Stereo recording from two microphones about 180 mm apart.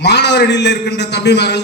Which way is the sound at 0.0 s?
70° left (ahead or behind).